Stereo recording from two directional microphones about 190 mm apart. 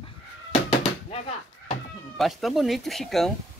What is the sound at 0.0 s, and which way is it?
Cat, 30° left (ahead or behind).